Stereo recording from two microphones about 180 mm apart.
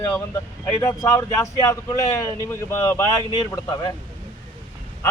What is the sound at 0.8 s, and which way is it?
Speech, 15° left (ahead or behind).